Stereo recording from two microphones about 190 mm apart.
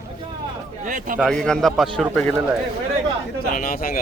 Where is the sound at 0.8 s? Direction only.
45° right (ahead or behind).